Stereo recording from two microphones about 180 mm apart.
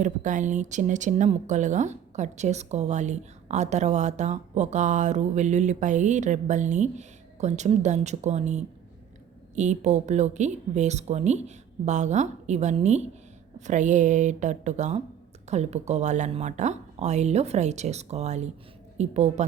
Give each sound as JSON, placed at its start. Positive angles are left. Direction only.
{"t": 0.0, "sound": "speech", "side_deg": -45}